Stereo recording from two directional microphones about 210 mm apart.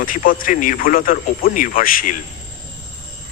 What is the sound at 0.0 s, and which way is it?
Speech, 40° left (ahead or behind).